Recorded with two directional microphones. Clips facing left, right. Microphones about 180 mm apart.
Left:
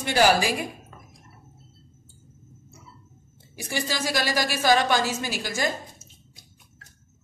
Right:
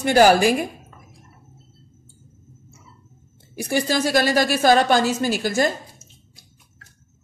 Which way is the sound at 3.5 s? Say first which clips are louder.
Right 8 dB; 50° right (ahead or behind).